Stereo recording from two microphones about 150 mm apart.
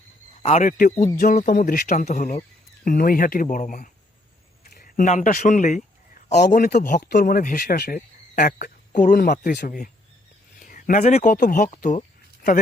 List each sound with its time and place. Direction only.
0.4 s speech: 55° left (ahead or behind)
1.5 s speech: 70° left (ahead or behind); by 2.4 s 55° left (ahead or behind)
2.8 s speech: 70° left (ahead or behind)
4.6 s a sound: 80° left; by 6.3 s 55° left (ahead or behind)
6.3 s a man's voice: 90° left
9.6 s speech: 65° left (ahead or behind)
10.6 s a sound: 65° left (ahead or behind)
11.0 s speech: 50° left (ahead or behind)